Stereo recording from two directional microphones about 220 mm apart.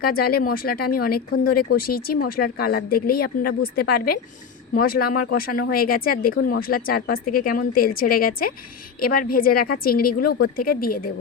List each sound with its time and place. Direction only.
0.0 s speech: 45° left (ahead or behind)